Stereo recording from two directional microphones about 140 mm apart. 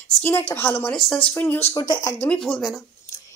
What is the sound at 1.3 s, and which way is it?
Speech, 15° left (ahead or behind).